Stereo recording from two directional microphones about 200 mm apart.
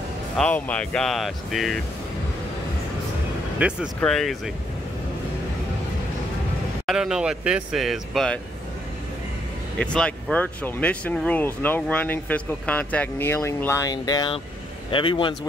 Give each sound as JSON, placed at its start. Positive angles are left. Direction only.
{"t": 0.4, "sound": "speech", "side_deg": 5}
{"t": 3.5, "sound": "speech", "side_deg": -5}
{"t": 6.9, "sound": "speech", "side_deg": -5}
{"t": 9.8, "sound": "speech", "side_deg": 5}